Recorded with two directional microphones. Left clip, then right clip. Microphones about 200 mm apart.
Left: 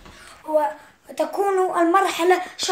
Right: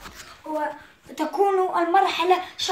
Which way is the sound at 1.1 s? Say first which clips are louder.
Left 1 dB; 30° left (ahead or behind).